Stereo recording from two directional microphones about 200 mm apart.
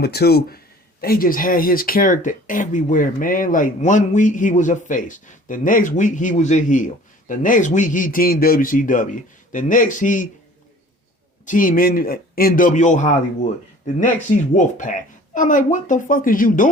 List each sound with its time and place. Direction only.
0.0 s a man's voice: 50° left (ahead or behind)
11.4 s a man's voice: 40° left (ahead or behind)